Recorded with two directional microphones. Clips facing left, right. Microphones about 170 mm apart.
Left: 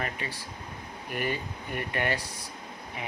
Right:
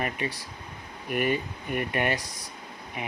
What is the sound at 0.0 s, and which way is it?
Speech, 20° right (ahead or behind).